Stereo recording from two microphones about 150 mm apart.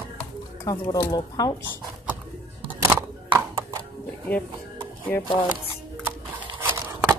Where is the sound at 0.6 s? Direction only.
20° left (ahead or behind).